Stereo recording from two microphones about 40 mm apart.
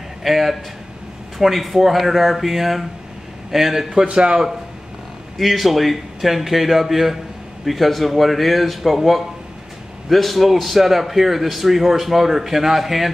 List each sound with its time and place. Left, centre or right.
0.2 s a man's voice: centre
3.9 s a man's voice: right
5.4 s a man's voice: centre